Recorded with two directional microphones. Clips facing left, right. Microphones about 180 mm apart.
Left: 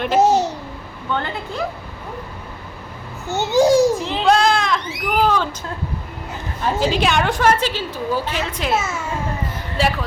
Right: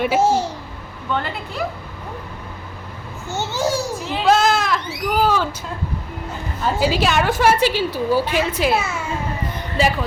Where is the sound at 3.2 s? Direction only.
15° left (ahead or behind).